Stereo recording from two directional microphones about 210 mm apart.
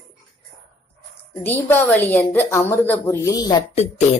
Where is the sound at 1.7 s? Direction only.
10° left (ahead or behind).